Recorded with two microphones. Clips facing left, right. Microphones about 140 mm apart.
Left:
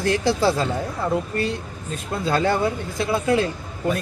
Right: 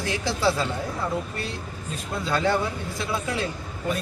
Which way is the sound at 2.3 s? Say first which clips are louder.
Left 4 dB; 45° left (ahead or behind).